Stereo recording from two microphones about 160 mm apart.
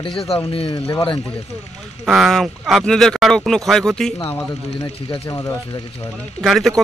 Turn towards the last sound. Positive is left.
turn(degrees=0)  # may be behind; listen again after turning